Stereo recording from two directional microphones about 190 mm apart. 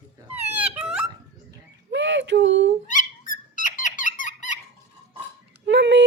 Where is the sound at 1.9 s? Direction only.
70° right (ahead or behind).